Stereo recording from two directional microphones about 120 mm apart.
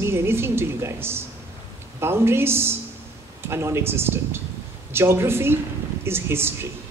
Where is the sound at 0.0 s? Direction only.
20° right (ahead or behind).